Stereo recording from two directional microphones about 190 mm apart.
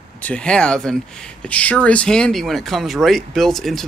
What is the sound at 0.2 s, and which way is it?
Speech, 5° left (ahead or behind).